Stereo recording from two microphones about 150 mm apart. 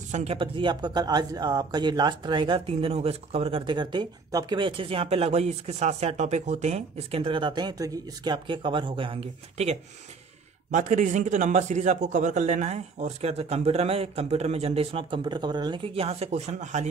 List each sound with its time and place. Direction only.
0.1 s speech: 40° right (ahead or behind)
10.7 s a man's voice: 55° right (ahead or behind)